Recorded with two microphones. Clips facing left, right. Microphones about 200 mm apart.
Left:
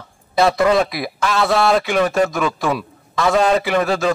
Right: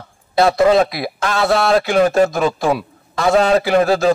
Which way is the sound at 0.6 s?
25° right (ahead or behind).